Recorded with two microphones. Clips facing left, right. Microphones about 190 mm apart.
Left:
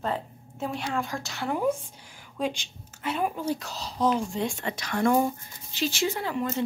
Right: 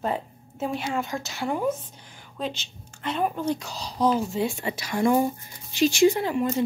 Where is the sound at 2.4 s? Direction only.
10° left (ahead or behind).